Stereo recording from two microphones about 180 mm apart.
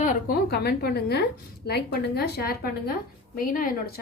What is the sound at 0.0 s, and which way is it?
Speech, 50° left (ahead or behind).